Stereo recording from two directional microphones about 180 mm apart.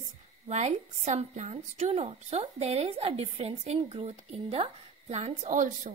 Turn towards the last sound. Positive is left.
turn(degrees=-45)  # may be behind; listen again after turning